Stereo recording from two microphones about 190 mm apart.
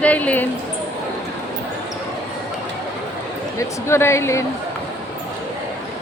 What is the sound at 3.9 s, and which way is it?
Speech, 15° left (ahead or behind).